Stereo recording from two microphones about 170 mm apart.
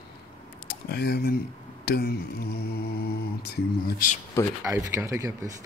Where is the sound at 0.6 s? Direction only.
70° left (ahead or behind).